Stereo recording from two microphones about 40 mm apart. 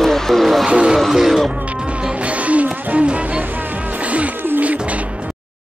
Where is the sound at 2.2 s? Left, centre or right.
Right.